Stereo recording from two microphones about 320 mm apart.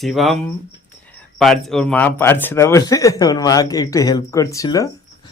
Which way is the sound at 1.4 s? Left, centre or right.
Centre.